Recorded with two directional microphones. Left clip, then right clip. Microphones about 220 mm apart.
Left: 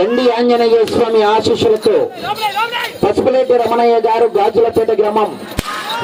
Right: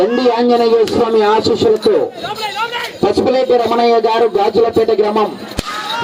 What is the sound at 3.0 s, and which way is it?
A man's voice, 5° right (ahead or behind).